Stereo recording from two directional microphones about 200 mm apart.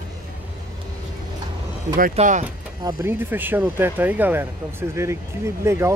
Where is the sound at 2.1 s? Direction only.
40° right (ahead or behind).